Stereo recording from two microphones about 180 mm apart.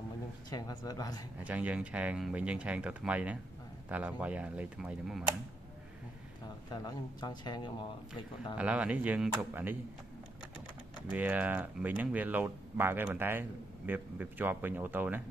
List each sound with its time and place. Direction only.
0.5 s speech: 20° left (ahead or behind)
1.4 s speech: 5° right (ahead or behind)
6.7 s speech: 25° left (ahead or behind)
8.5 s speech: 5° right (ahead or behind)
11.1 s speech: 10° right (ahead or behind)